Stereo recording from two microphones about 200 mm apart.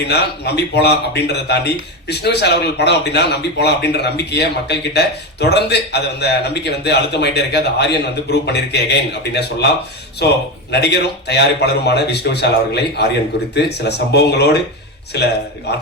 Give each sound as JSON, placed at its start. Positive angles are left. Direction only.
{"t": 0.1, "sound": "speech", "side_deg": 55}